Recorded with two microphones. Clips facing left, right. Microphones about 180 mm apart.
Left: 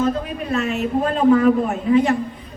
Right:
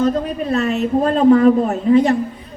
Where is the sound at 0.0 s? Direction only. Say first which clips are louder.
Right 4 dB; 35° right (ahead or behind).